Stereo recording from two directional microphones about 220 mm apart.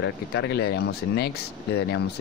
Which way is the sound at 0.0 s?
50° left (ahead or behind).